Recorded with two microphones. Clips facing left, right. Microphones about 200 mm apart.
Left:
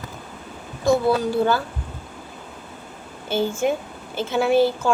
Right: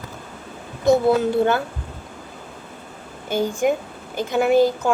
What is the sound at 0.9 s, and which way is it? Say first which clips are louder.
Speech: right 2 dB; 20° right (ahead or behind).